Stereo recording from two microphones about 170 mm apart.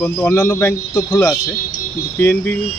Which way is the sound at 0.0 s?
10° left (ahead or behind).